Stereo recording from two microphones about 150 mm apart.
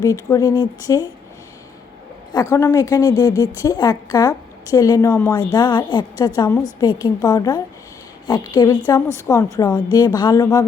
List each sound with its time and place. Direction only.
0.0 s a woman's voice: 20° left (ahead or behind)
2.3 s a woman's voice: 20° left (ahead or behind)